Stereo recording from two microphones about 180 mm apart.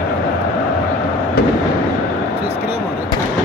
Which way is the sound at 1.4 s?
60° left (ahead or behind).